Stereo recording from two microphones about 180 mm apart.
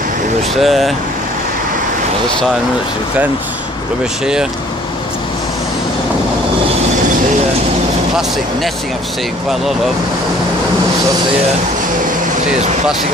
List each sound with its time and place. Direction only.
0.6 s speech: centre (ahead or behind)